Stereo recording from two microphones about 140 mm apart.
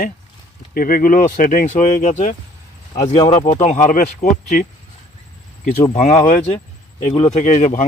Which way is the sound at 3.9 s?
70° left (ahead or behind).